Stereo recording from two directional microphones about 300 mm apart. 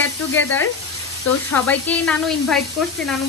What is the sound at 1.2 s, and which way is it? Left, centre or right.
Speech, left.